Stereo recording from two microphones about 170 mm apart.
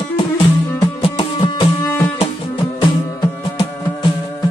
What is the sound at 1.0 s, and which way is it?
Music, 30° left (ahead or behind).